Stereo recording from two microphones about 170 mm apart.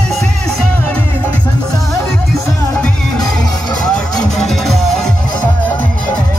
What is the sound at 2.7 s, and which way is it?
Music, 5° left (ahead or behind).